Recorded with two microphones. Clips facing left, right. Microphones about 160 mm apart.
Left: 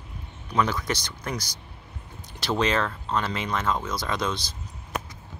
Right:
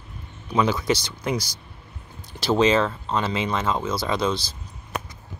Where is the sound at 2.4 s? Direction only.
30° right (ahead or behind).